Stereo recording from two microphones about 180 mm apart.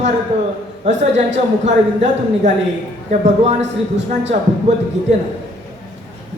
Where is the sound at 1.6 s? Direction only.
40° right (ahead or behind).